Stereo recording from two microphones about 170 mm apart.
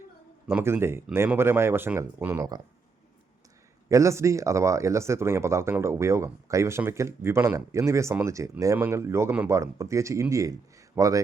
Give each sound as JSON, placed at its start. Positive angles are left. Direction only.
{"t": 0.4, "sound": "speech", "side_deg": -15}
{"t": 3.8, "sound": "speech", "side_deg": -20}